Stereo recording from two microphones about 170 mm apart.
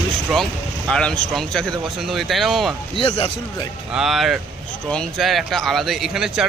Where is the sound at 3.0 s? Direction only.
35° left (ahead or behind).